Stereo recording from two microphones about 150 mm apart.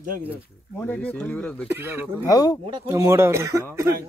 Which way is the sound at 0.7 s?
10° left (ahead or behind).